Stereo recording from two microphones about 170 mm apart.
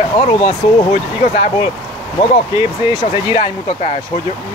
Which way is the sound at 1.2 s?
45° left (ahead or behind).